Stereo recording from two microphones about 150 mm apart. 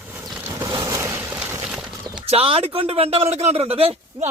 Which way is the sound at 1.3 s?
5° right (ahead or behind).